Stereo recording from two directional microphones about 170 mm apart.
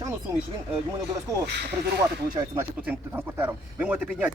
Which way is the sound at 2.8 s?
10° right (ahead or behind).